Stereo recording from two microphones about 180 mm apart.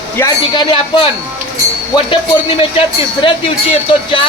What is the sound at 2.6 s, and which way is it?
Speech, 30° left (ahead or behind).